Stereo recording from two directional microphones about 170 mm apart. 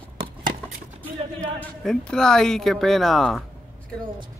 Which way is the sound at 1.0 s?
5° left (ahead or behind).